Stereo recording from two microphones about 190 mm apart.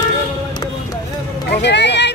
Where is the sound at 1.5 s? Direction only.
65° left (ahead or behind).